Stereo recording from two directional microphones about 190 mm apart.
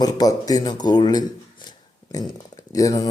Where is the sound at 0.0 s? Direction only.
20° left (ahead or behind).